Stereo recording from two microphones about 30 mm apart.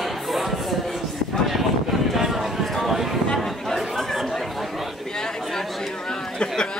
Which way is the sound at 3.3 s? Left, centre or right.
Centre.